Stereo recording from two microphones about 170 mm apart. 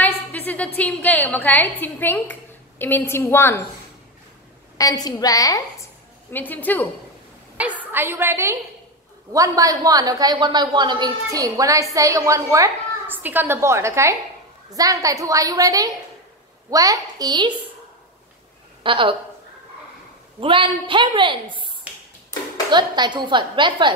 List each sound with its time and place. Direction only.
0.0 s a sound: 10° left (ahead or behind)
0.7 s speech: 10° left (ahead or behind)
4.7 s a woman's voice: 20° left (ahead or behind)
7.5 s a woman's voice: 10° right (ahead or behind); by 17.6 s 25° right (ahead or behind)
18.8 s a woman's voice: 30° right (ahead or behind)
20.3 s a woman's voice: 30° right (ahead or behind)